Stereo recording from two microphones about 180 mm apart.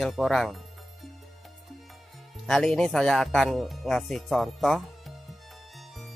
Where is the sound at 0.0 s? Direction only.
Centre (ahead or behind).